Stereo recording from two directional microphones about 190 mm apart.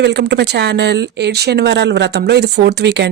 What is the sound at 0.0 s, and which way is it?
Speech, 60° right (ahead or behind).